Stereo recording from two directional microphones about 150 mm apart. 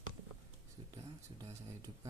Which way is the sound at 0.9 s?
25° right (ahead or behind).